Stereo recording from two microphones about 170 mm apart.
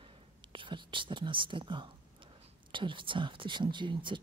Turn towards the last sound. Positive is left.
turn(degrees=-30)  # may be behind; listen again after turning